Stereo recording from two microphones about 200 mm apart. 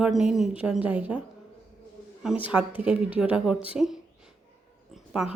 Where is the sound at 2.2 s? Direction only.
5° right (ahead or behind).